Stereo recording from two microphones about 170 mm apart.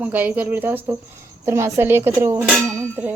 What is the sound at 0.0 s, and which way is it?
Speech, 10° right (ahead or behind).